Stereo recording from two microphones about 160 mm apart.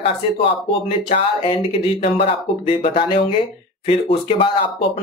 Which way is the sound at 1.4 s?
35° left (ahead or behind).